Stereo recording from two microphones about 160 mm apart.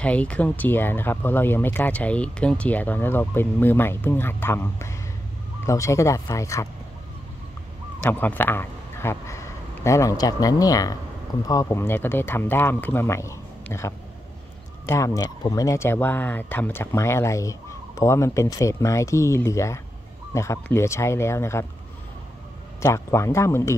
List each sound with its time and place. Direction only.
0.0 s speech: 10° left (ahead or behind)
8.0 s speech: 10° left (ahead or behind)
22.8 s speech: 20° left (ahead or behind)